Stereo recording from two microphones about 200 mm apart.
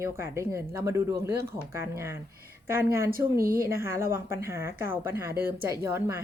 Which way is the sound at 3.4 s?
45° right (ahead or behind).